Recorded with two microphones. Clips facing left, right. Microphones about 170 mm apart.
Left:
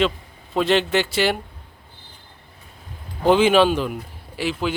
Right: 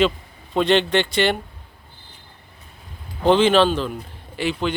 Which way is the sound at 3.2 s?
10° left (ahead or behind).